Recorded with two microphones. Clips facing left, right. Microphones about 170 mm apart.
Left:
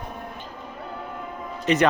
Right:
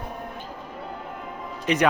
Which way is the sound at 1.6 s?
10° right (ahead or behind).